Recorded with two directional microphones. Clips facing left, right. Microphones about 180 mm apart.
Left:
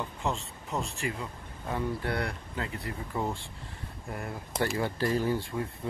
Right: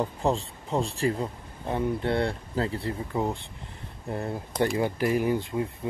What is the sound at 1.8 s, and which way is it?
Speech, 20° right (ahead or behind).